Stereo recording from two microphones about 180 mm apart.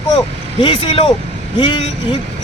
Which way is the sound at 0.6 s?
30° left (ahead or behind).